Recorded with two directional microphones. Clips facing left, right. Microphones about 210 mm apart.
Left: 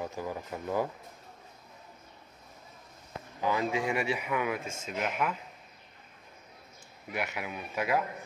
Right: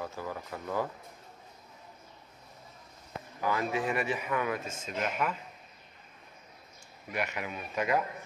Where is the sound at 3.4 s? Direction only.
15° left (ahead or behind).